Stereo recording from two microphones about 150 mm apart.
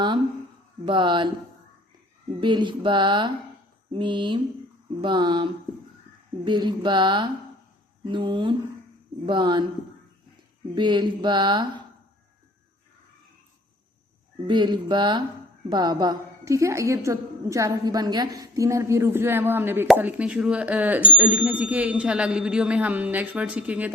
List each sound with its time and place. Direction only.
0.9 s mantra: 30° right (ahead or behind)
2.4 s mantra: 30° right (ahead or behind)
10.8 s mantra: 30° right (ahead or behind)
14.4 s mantra: 30° right (ahead or behind)
15.7 s a woman's voice: 30° right (ahead or behind); by 23.9 s 10° right (ahead or behind)